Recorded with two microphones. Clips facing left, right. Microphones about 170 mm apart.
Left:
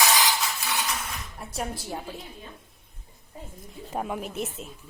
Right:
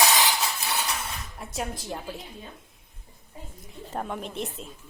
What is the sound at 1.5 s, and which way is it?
Speech, 10° left (ahead or behind).